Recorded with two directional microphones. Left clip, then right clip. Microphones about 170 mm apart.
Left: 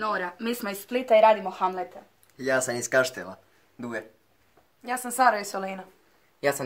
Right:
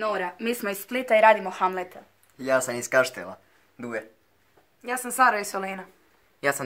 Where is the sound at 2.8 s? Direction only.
10° right (ahead or behind).